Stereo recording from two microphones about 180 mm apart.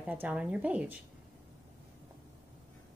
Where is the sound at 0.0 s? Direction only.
10° right (ahead or behind).